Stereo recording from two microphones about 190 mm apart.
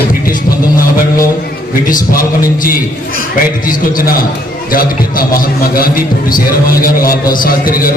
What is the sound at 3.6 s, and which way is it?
A man's voice, 45° left (ahead or behind).